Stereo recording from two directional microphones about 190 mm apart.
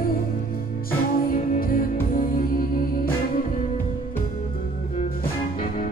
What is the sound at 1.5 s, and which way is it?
Music, 50° left (ahead or behind).